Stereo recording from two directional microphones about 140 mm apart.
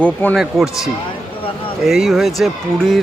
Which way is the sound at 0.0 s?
10° left (ahead or behind).